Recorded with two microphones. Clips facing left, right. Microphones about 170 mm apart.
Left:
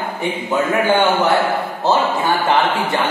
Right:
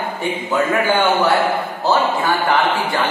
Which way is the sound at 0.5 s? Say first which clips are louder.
Left 1 dB; 20° left (ahead or behind).